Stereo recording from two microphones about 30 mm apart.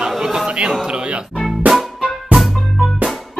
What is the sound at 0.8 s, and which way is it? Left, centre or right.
Music, right.